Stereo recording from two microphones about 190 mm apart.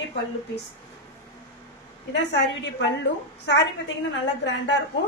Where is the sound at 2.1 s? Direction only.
70° left (ahead or behind).